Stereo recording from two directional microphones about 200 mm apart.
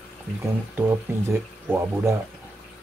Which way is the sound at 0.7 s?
10° right (ahead or behind).